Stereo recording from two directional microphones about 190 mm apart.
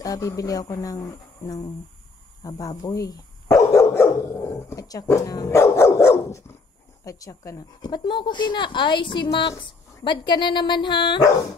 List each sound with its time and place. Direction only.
0.0 s speech: 20° left (ahead or behind)
2.4 s dog: 20° left (ahead or behind)
7.1 s speech: 20° left (ahead or behind)